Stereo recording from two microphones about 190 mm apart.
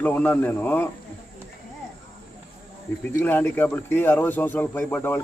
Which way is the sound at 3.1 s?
10° left (ahead or behind).